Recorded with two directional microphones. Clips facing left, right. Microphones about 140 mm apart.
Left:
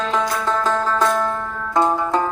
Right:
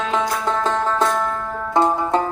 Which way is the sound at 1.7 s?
25° right (ahead or behind).